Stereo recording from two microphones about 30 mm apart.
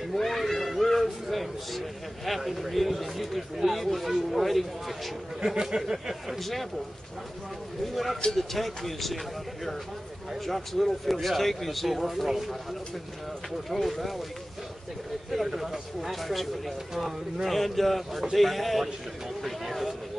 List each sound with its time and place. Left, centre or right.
0.1 s a sound: centre
1.3 s a man's voice: centre
5.4 s speech: right
6.4 s a man's voice: centre
7.8 s a man's voice: centre
10.4 s a man's voice: centre
13.7 s a man's voice: centre
15.3 s a man's voice: centre
19.4 s a sound: centre